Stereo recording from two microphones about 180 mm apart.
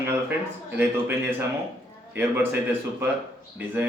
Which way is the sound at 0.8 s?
10° right (ahead or behind).